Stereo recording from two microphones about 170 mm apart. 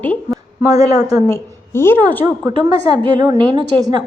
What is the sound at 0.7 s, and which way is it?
Speech, 20° right (ahead or behind).